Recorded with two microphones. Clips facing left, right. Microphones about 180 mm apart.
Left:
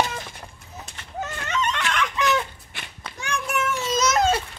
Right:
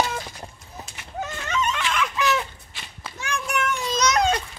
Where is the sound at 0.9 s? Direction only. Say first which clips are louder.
Even; 10° right (ahead or behind).